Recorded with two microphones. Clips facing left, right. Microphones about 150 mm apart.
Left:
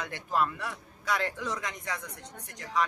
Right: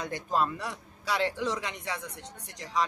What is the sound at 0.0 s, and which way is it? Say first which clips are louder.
A man's voice: right 1 dB; 20° right (ahead or behind).